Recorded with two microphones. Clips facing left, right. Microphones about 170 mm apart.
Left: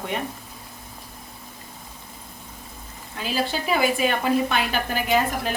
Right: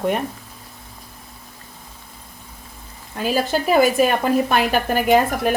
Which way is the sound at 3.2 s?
45° right (ahead or behind).